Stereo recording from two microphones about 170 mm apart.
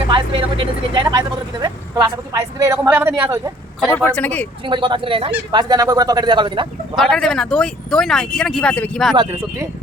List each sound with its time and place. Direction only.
0.1 s speech: 30° right (ahead or behind)
3.8 s speech: 5° left (ahead or behind)
4.6 s speech: 30° right (ahead or behind)
6.9 s speech: 5° left (ahead or behind)
9.1 s speech: 20° right (ahead or behind)